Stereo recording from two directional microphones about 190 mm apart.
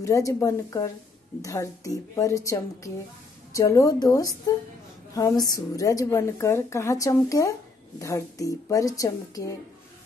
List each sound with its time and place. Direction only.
0.0 s a woman's voice: 15° left (ahead or behind)